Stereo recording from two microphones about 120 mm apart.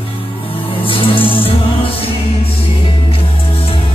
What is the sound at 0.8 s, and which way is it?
Music, 50° left (ahead or behind).